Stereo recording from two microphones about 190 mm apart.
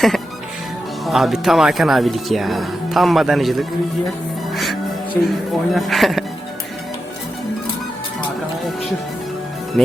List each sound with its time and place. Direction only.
1.0 s speech: centre (ahead or behind)
4.5 s music: centre (ahead or behind)
5.2 s speech: 10° left (ahead or behind)
9.7 s speech: centre (ahead or behind)